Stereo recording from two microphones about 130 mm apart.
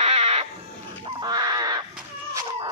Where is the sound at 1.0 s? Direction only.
35° right (ahead or behind).